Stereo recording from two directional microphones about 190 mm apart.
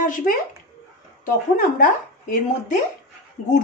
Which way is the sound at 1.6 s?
50° left (ahead or behind).